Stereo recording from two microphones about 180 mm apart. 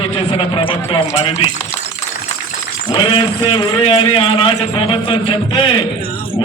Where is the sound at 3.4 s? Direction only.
30° left (ahead or behind).